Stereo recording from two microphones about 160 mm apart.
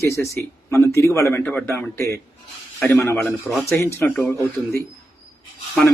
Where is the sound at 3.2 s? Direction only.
5° left (ahead or behind).